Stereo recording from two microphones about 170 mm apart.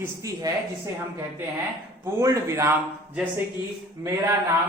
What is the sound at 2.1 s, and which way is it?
Speech, 15° right (ahead or behind).